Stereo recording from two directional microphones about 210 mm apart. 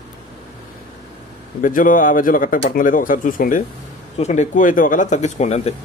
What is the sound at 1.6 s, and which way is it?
Speech, 40° left (ahead or behind).